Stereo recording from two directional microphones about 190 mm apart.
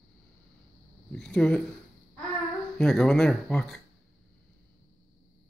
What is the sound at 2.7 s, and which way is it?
Speech, centre (ahead or behind).